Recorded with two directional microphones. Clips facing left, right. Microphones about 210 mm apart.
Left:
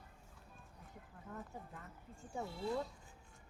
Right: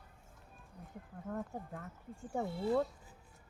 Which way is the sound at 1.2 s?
60° right (ahead or behind).